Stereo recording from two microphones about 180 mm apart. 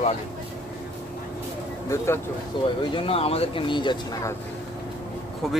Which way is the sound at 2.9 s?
30° left (ahead or behind).